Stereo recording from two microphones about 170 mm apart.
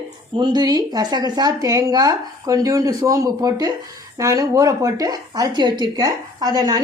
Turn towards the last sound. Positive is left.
turn(degrees=-20)  # may be behind; listen again after turning